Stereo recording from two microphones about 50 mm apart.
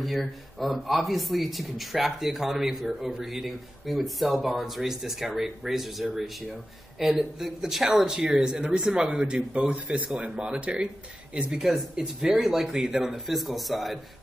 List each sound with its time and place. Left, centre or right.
0.0 s speech: centre